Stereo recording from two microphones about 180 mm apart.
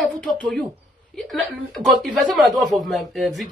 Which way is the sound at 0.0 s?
5° left (ahead or behind).